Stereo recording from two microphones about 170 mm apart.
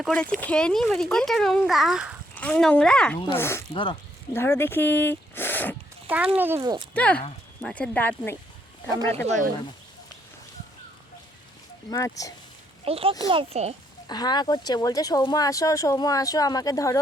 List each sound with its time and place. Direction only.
0.0 s speech: 5° left (ahead or behind)
2.3 s speech: 5° left (ahead or behind)
6.3 s speech: 10° right (ahead or behind)
6.6 s speech: 25° right (ahead or behind)
6.9 s speech: 5° left (ahead or behind)
9.2 s speech: 45° right (ahead or behind)
11.9 s speech: 20° left (ahead or behind)
12.8 s a child's voice: 35° right (ahead or behind)
14.1 s speech: 25° left (ahead or behind)